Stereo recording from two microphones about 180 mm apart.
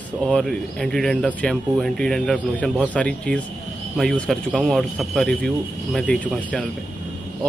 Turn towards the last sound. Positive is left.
turn(degrees=5)  # may be behind; listen again after turning